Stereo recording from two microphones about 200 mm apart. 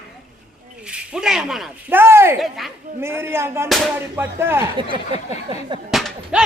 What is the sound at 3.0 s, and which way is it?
Speech, 10° right (ahead or behind).